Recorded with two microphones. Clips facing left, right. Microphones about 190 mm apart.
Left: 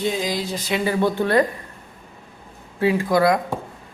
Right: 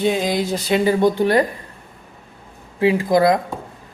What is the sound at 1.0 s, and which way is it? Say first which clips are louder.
Speech: right 3 dB; 15° right (ahead or behind).